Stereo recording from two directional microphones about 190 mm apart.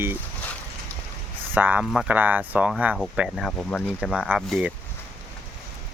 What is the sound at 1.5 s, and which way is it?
Speech, 10° right (ahead or behind).